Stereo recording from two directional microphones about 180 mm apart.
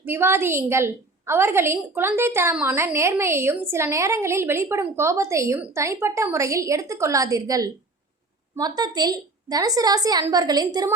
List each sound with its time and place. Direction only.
0.0 s a woman's voice: 15° right (ahead or behind)